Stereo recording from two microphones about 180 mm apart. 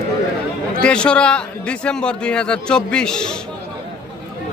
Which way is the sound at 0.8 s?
5° left (ahead or behind).